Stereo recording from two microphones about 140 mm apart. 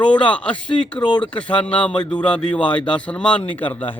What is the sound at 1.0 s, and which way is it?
Speech, 35° left (ahead or behind).